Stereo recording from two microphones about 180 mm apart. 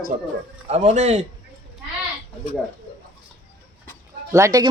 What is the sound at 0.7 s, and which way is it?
Speech, 35° right (ahead or behind).